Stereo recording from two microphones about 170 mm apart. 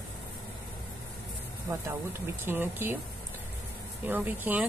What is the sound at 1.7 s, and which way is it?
Speech, 20° right (ahead or behind).